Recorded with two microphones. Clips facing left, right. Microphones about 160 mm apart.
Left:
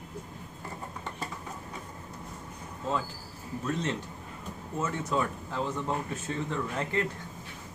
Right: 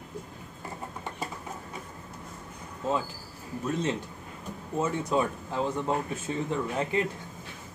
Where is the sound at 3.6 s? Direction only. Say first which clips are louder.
Right 2 dB; 15° right (ahead or behind).